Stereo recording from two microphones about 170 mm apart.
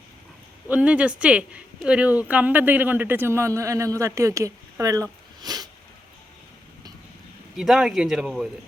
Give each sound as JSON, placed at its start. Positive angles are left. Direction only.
{"t": 0.7, "sound": "speech", "side_deg": -5}
{"t": 5.4, "sound": "a sound", "side_deg": -25}
{"t": 7.5, "sound": "speech", "side_deg": 0}